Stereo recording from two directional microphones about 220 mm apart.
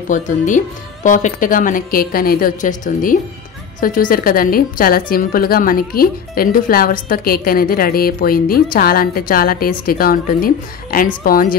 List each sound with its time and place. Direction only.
0.1 s a woman's voice: 35° left (ahead or behind)